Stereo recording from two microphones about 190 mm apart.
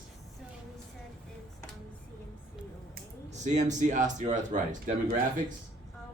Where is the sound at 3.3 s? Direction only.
40° right (ahead or behind).